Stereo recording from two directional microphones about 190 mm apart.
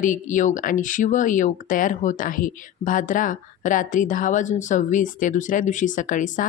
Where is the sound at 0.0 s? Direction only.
45° left (ahead or behind).